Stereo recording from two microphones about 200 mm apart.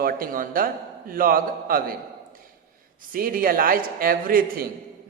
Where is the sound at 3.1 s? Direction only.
45° right (ahead or behind).